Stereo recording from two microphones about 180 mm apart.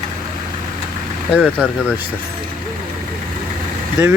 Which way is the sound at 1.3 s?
5° right (ahead or behind).